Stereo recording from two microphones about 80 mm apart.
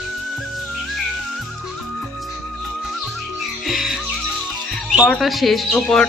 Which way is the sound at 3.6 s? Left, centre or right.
Centre.